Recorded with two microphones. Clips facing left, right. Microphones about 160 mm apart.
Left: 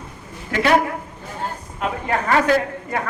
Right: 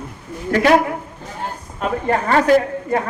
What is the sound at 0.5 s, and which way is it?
Speech, 40° right (ahead or behind).